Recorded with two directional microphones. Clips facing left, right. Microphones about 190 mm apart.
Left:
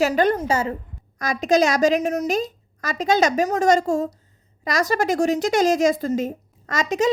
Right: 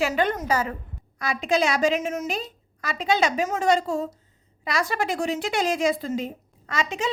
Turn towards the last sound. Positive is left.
turn(degrees=40)  # may be behind; listen again after turning